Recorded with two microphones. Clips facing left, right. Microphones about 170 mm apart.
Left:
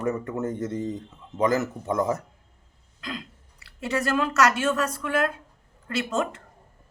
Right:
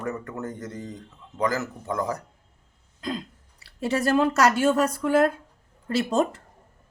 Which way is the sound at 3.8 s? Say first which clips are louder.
Right 3 dB; 30° right (ahead or behind).